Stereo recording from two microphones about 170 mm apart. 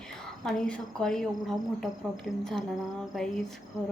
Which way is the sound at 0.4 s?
5° left (ahead or behind).